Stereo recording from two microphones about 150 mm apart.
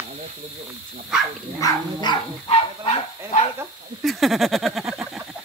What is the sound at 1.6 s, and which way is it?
Dog, 30° left (ahead or behind).